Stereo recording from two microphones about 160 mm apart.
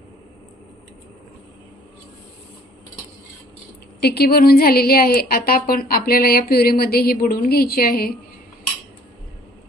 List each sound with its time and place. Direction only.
4.0 s a woman's voice: 80° left